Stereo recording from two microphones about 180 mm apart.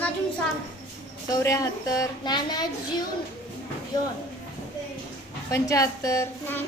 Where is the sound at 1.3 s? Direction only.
20° left (ahead or behind).